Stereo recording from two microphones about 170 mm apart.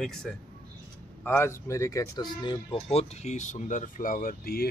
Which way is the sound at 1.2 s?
15° left (ahead or behind).